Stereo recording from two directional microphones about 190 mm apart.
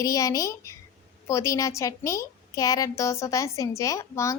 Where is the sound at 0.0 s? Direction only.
15° left (ahead or behind).